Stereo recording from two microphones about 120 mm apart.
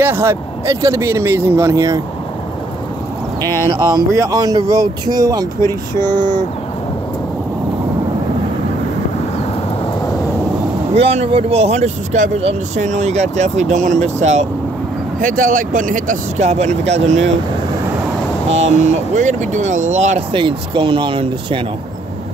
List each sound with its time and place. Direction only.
0.0 s speech: 20° right (ahead or behind)
3.4 s speech: 20° left (ahead or behind)
4.1 s speech: 30° right (ahead or behind)
11.0 s speech: 60° right (ahead or behind)
15.1 s speech: 90° right; by 17.3 s 70° right (ahead or behind)
18.5 s speech: 70° right (ahead or behind)
20.3 s speech: 45° right (ahead or behind)